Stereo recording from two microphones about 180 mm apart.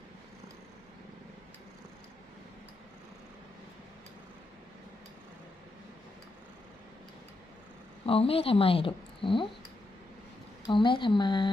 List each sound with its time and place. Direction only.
8.0 s a woman's voice: 30° left (ahead or behind)
10.7 s speech: 25° left (ahead or behind)